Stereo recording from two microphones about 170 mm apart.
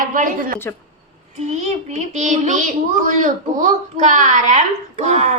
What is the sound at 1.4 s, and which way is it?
A child's voice, 40° right (ahead or behind).